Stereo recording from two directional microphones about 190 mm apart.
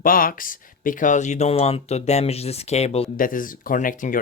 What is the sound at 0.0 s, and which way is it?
Speech, 50° left (ahead or behind).